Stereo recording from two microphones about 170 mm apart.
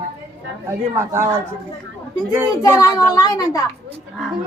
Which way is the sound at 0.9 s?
15° right (ahead or behind).